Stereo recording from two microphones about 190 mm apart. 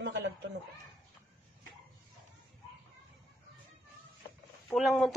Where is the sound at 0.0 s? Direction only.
65° right (ahead or behind).